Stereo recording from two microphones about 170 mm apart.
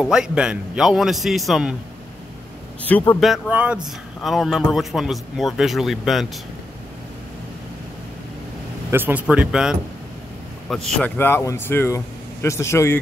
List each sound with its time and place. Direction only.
0.0 s a man's voice: 5° right (ahead or behind)
2.9 s a man's voice: 5° left (ahead or behind)
8.9 s speech: 10° right (ahead or behind)
10.7 s speech: 10° left (ahead or behind)